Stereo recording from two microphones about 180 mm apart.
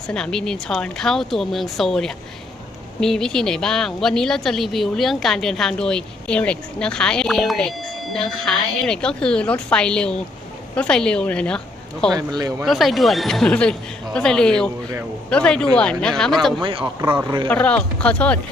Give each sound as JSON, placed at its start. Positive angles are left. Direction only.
{"t": 0.1, "sound": "a woman's voice", "side_deg": 5}
{"t": 12.1, "sound": "speech", "side_deg": -20}
{"t": 12.6, "sound": "a woman's voice", "side_deg": 0}
{"t": 16.6, "sound": "speech", "side_deg": -25}
{"t": 17.5, "sound": "speech", "side_deg": 5}